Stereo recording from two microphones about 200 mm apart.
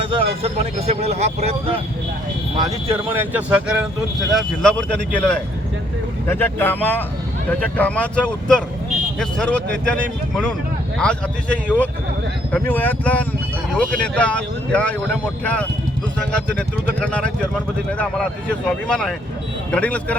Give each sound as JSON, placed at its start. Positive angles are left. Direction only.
{"t": 0.1, "sound": "speech", "side_deg": -30}
{"t": 2.9, "sound": "speech", "side_deg": -10}
{"t": 4.4, "sound": "speech", "side_deg": 5}